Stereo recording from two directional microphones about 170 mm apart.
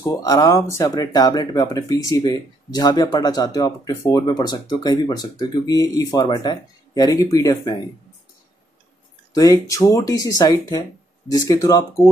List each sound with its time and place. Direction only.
0.0 s speech: 20° left (ahead or behind)
9.3 s speech: 20° left (ahead or behind)